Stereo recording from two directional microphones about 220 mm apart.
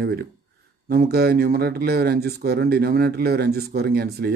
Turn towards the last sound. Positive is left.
turn(degrees=-45)  # may be behind; listen again after turning